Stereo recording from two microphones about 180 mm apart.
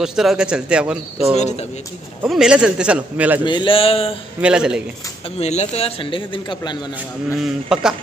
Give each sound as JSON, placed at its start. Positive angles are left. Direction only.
{"t": 0.0, "sound": "speech", "side_deg": 0}
{"t": 1.3, "sound": "a man's voice", "side_deg": 35}
{"t": 2.2, "sound": "speech", "side_deg": -5}
{"t": 3.4, "sound": "a man's voice", "side_deg": 25}
{"t": 4.4, "sound": "speech", "side_deg": -5}
{"t": 5.4, "sound": "a man's voice", "side_deg": 40}
{"t": 7.3, "sound": "speech", "side_deg": -5}